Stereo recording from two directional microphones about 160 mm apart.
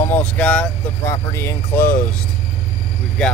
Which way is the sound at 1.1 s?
15° left (ahead or behind).